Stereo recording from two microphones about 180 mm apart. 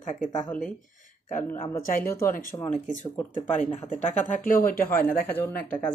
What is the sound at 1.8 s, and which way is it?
Speech, 50° left (ahead or behind).